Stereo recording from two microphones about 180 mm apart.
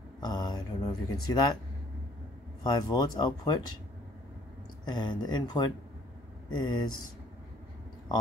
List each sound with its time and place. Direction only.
0.2 s speech: 25° left (ahead or behind)
2.6 s speech: 20° left (ahead or behind)
4.8 s speech: 25° left (ahead or behind)